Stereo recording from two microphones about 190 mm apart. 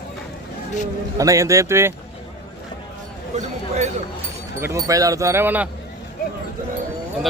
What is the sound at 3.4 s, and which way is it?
Speech, 40° right (ahead or behind).